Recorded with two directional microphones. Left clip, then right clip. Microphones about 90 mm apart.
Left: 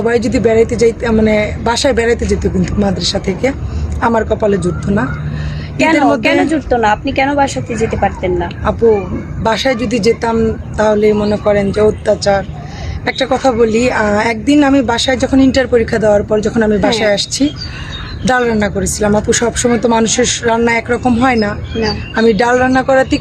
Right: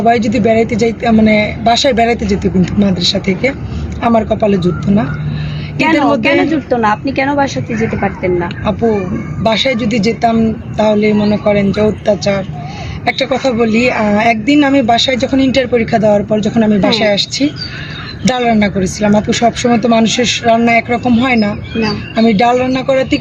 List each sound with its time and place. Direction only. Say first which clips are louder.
0.0 s speech: right 1 dB; 40° left (ahead or behind)
4.3 s speech: right 1 dB; 30° left (ahead or behind)
4.5 s speech: right 1 dB; 45° left (ahead or behind)
5.7 s speech: even; 20° left (ahead or behind)
9.4 s speech: right 1 dB; 40° left (ahead or behind)
21.8 s speech: left 1 dB; 25° left (ahead or behind)
22.3 s speech: left 1 dB; 45° left (ahead or behind)